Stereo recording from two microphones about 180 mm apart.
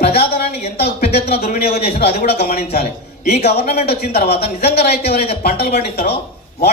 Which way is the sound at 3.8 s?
60° left (ahead or behind).